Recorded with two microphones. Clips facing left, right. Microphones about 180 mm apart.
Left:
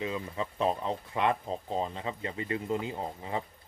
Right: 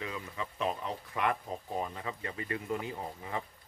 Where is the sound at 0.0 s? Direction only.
25° left (ahead or behind).